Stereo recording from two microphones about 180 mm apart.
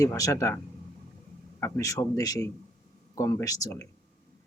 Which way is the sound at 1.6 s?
15° left (ahead or behind).